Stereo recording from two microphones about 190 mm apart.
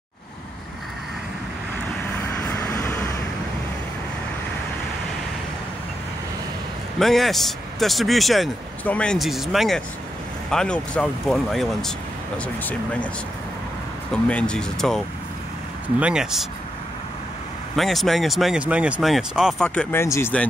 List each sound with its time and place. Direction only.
2.2 s vehicle: 10° left (ahead or behind)
7.0 s speech: centre (ahead or behind)
14.1 s speech: 5° left (ahead or behind)
17.7 s speech: centre (ahead or behind)